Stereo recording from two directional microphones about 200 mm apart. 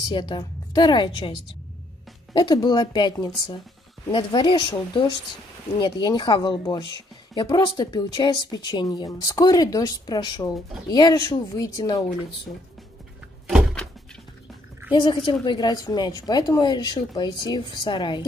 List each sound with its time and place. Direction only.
0.0 s a woman's voice: 20° left (ahead or behind)
2.3 s a woman's voice: 20° left (ahead or behind)
13.5 s a sound: 5° right (ahead or behind)
15.0 s a woman's voice: 25° left (ahead or behind)